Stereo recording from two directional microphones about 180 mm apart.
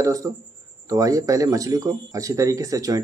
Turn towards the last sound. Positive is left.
turn(degrees=-20)  # may be behind; listen again after turning